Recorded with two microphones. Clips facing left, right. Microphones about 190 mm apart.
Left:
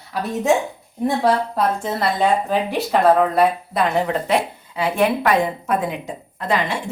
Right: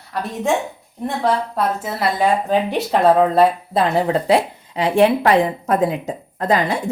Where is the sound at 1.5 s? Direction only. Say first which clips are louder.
Left 1 dB; 5° right (ahead or behind).